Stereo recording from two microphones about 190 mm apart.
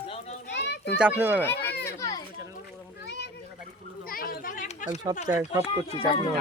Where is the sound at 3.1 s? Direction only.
60° left (ahead or behind).